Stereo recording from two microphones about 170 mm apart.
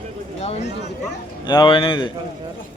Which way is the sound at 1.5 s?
25° left (ahead or behind).